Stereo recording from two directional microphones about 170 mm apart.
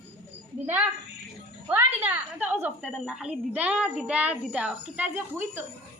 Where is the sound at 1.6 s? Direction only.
10° right (ahead or behind).